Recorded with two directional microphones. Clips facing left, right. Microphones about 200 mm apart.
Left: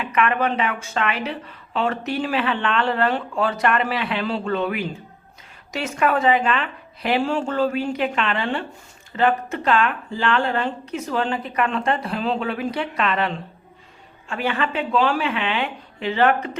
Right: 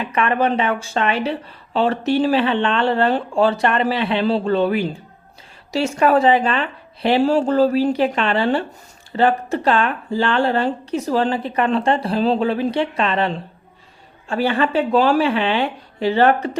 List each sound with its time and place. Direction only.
0.0 s speech: 30° right (ahead or behind)